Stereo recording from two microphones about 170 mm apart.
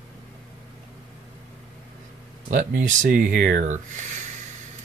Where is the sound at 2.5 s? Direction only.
50° right (ahead or behind).